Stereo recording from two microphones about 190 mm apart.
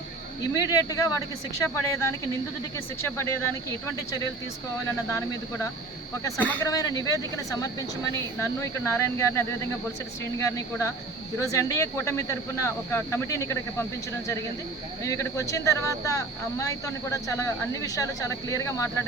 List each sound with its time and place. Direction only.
0.5 s speech: 20° left (ahead or behind)
6.2 s speech: 15° left (ahead or behind)
15.0 s speech: 15° left (ahead or behind)